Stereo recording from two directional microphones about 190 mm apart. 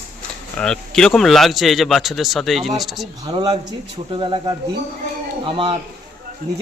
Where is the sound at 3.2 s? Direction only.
25° right (ahead or behind).